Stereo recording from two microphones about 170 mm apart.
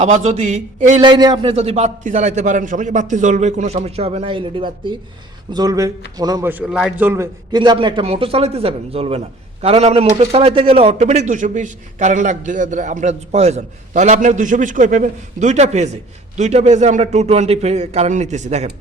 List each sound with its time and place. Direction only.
0.0 s a man's voice: 40° right (ahead or behind)
1.0 s a man's voice: 25° right (ahead or behind)
6.5 s a man's voice: 5° right (ahead or behind)
7.0 s a man's voice: 15° right (ahead or behind)
7.5 s a man's voice: 25° right (ahead or behind); by 18.7 s 40° right (ahead or behind)